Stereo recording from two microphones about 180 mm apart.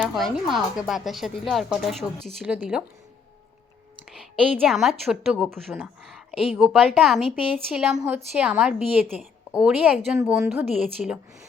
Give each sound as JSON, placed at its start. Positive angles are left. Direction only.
{"t": 0.0, "sound": "a woman's voice", "side_deg": 0}
{"t": 4.5, "sound": "a woman's voice", "side_deg": 0}